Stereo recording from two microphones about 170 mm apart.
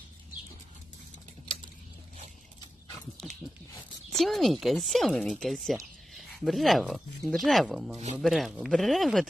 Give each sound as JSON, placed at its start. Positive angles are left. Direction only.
{"t": 4.1, "sound": "speech", "side_deg": 0}